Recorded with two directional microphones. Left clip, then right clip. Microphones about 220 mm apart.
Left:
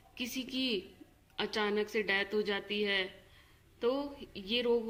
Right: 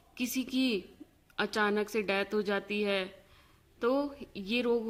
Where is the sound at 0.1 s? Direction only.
50° right (ahead or behind).